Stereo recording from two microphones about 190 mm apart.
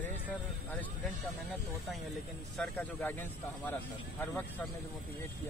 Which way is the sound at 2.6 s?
10° left (ahead or behind).